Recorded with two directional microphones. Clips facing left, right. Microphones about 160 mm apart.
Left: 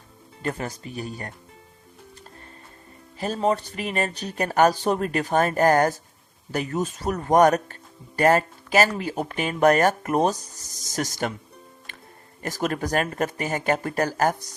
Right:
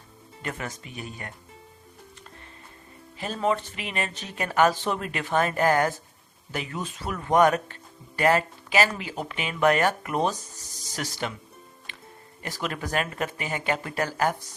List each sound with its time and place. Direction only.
0.4 s speech: 35° left (ahead or behind)
3.2 s speech: 40° left (ahead or behind)
12.4 s speech: 45° left (ahead or behind)